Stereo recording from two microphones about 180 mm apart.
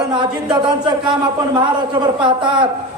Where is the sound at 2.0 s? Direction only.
25° right (ahead or behind).